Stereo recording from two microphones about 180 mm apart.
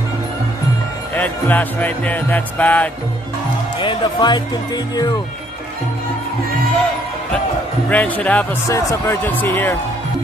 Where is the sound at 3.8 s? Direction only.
25° left (ahead or behind).